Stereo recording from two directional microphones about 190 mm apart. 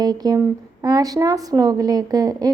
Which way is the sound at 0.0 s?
20° right (ahead or behind).